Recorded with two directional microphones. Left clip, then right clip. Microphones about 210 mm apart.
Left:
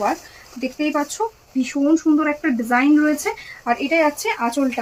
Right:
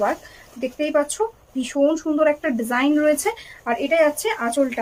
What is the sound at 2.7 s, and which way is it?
A woman's voice, 35° right (ahead or behind).